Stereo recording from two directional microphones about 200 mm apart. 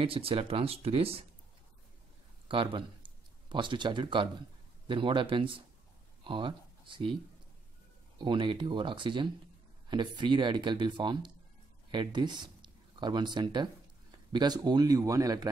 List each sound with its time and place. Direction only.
0.0 s speech: 30° right (ahead or behind)
2.4 s speech: 25° right (ahead or behind)
8.2 s speech: 25° right (ahead or behind)